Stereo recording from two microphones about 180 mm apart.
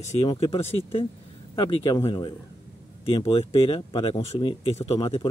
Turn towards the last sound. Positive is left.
turn(degrees=35)  # may be behind; listen again after turning